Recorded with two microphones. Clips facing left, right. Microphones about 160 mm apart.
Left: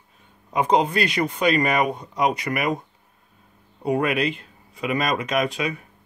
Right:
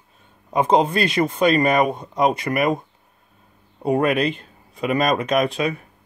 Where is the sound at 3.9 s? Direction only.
40° right (ahead or behind).